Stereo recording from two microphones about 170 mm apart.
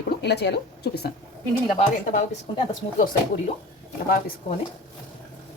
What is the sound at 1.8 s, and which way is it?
Speech, 50° left (ahead or behind).